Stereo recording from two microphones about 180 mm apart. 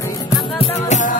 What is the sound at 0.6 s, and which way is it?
Music, 45° left (ahead or behind).